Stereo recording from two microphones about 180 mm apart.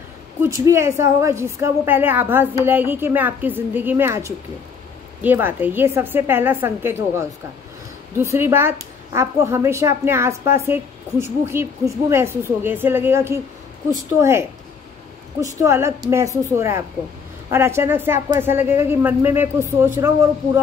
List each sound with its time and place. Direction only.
0.4 s speech: 15° right (ahead or behind)
15.6 s speech: 15° right (ahead or behind)